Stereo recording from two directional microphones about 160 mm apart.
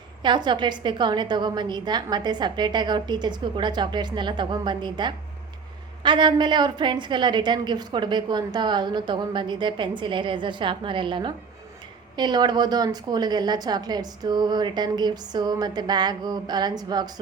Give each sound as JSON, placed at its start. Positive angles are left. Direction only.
{"t": 0.2, "sound": "a woman's voice", "side_deg": -30}